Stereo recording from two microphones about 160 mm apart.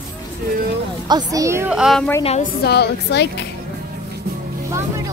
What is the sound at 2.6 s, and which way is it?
Speech, 90° left.